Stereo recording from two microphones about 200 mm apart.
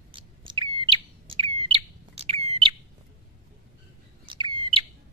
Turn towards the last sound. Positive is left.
turn(degrees=-25)  # may be behind; listen again after turning